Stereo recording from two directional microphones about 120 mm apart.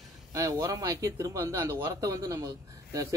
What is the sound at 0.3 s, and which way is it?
Speech, 30° right (ahead or behind).